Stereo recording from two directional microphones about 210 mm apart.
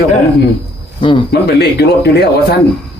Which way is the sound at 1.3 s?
50° left (ahead or behind).